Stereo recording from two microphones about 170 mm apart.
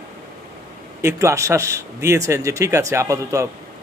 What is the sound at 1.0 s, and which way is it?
A man's voice, 15° right (ahead or behind).